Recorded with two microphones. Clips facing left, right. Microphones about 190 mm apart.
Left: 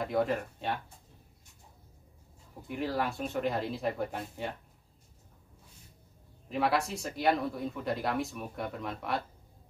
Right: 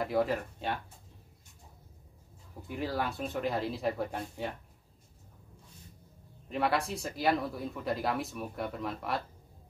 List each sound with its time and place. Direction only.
0.0 s speech: centre (ahead or behind)
2.7 s speech: centre (ahead or behind)
6.5 s speech: centre (ahead or behind)